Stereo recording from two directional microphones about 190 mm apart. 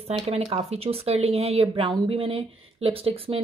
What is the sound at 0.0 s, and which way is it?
Speech, 30° right (ahead or behind).